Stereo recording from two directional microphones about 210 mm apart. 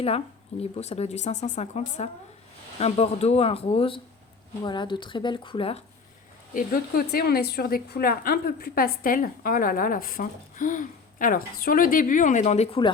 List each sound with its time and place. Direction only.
0.6 s speech: 30° left (ahead or behind)
6.5 s a woman's voice: 40° left (ahead or behind)